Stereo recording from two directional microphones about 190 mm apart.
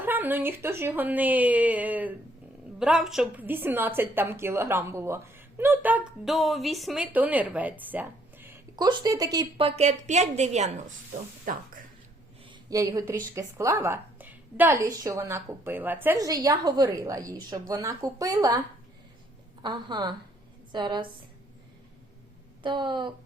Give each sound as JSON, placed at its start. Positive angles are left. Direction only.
{"t": 0.0, "sound": "a woman's voice", "side_deg": -10}
{"t": 12.5, "sound": "a woman's voice", "side_deg": -15}
{"t": 19.6, "sound": "a woman's voice", "side_deg": -25}
{"t": 22.6, "sound": "a woman's voice", "side_deg": -25}